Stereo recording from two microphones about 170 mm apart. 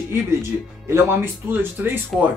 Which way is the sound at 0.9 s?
15° right (ahead or behind).